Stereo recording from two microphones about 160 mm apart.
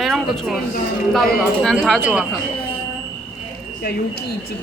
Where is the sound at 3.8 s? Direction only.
90° left.